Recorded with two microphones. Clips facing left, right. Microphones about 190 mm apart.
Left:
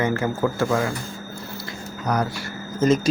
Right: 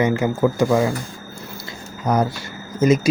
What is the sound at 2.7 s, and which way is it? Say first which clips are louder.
Speech: right 2 dB; 10° right (ahead or behind).